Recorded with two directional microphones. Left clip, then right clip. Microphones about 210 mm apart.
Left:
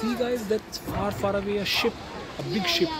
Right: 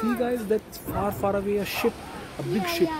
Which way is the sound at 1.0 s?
30° right (ahead or behind).